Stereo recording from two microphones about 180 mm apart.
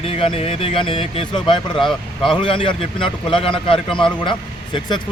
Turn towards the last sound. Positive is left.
turn(degrees=25)  # may be behind; listen again after turning